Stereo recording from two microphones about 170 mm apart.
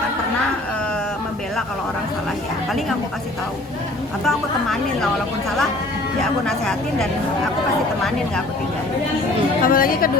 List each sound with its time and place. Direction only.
4.3 s a woman's voice: centre (ahead or behind)
6.4 s a woman's voice: 5° left (ahead or behind)
9.6 s a woman's voice: 55° left (ahead or behind)